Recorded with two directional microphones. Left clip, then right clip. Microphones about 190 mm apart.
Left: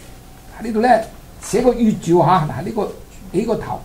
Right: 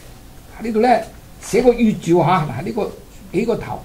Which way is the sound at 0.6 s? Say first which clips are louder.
Left 1 dB; 30° right (ahead or behind).